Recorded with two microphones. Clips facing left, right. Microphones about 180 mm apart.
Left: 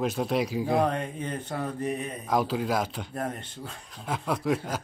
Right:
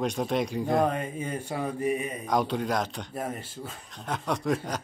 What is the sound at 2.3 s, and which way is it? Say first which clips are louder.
Speech: left 1 dB; 5° left (ahead or behind).